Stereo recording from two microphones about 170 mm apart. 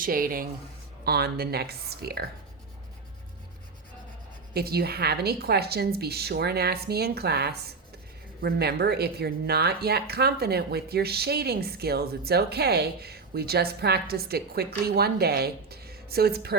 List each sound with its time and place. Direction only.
0.0 s speech: 55° right (ahead or behind)
1.0 s speech: 65° right (ahead or behind)
4.5 s speech: 65° right (ahead or behind)